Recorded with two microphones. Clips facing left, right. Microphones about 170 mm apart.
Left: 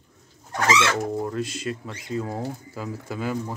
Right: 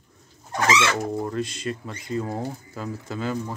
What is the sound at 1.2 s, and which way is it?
Speech, 5° left (ahead or behind).